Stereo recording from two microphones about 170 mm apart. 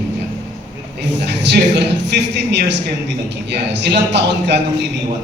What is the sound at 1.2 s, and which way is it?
A man's voice, 80° right.